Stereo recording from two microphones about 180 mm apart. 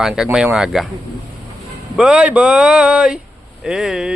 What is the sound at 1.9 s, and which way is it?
Speech, 5° right (ahead or behind).